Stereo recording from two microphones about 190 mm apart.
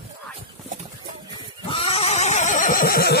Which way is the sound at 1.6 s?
30° left (ahead or behind).